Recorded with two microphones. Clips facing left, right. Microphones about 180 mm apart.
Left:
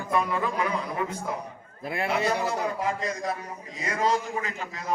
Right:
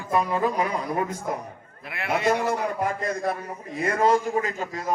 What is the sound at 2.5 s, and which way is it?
A man's voice, 55° right (ahead or behind).